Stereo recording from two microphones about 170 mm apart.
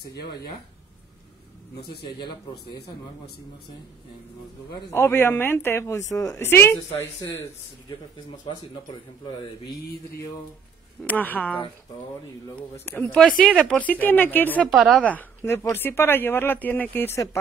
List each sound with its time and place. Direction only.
2.1 s speech: 25° left (ahead or behind)
4.9 s speech: 15° left (ahead or behind)
11.1 s speech: 10° left (ahead or behind)
12.8 s speech: 10° left (ahead or behind)
14.7 s speech: centre (ahead or behind); by 17.4 s 15° left (ahead or behind)